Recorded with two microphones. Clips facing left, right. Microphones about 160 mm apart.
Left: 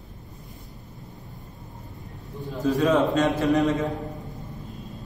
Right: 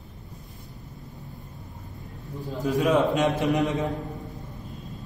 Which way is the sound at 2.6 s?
20° right (ahead or behind).